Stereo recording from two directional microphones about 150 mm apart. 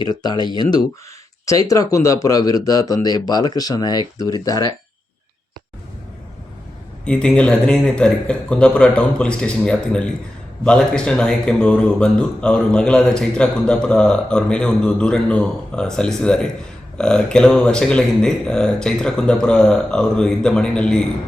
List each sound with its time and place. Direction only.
0.0 s speech: 30° left (ahead or behind)
7.0 s speech: 5° left (ahead or behind)